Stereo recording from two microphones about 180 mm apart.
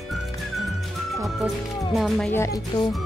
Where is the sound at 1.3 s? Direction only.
Centre (ahead or behind).